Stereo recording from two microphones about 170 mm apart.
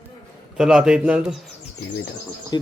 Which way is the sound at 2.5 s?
25° left (ahead or behind).